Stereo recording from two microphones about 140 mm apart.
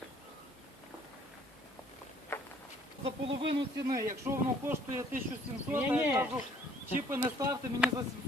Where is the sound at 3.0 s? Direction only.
40° right (ahead or behind).